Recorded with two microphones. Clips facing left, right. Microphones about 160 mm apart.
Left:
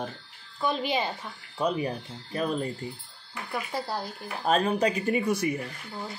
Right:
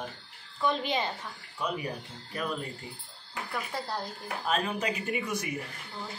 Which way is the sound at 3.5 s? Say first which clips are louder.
Left 4 dB; 10° left (ahead or behind).